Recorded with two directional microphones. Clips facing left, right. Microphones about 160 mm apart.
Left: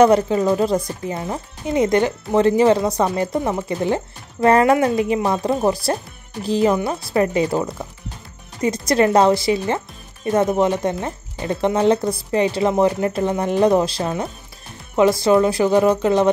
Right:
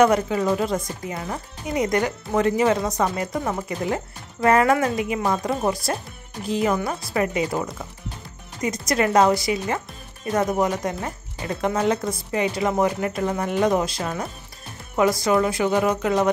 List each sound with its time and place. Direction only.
0.0 s speech: 30° left (ahead or behind)